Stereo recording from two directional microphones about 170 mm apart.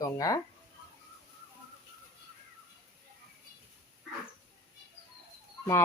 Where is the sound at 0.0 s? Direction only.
20° left (ahead or behind).